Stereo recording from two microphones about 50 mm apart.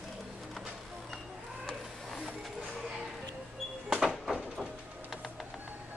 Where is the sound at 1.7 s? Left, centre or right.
Centre.